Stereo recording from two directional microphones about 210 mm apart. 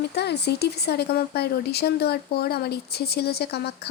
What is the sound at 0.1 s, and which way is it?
Speech, 50° left (ahead or behind).